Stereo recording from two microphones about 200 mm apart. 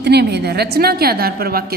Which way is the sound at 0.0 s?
55° right (ahead or behind).